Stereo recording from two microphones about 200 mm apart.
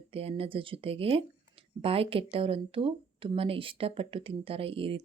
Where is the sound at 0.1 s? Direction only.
30° right (ahead or behind).